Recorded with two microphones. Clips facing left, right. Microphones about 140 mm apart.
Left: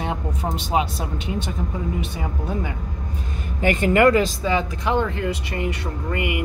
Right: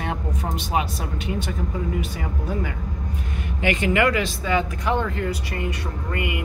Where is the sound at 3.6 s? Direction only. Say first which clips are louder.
Left 4 dB; 45° left (ahead or behind); by 5.0 s 25° left (ahead or behind).